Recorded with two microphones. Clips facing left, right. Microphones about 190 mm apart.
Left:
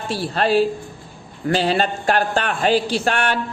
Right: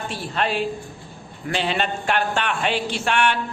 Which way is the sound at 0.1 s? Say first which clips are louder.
Left 8 dB; 35° left (ahead or behind).